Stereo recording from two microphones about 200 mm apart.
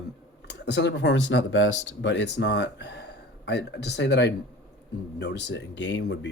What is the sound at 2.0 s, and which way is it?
Speech, 65° left (ahead or behind).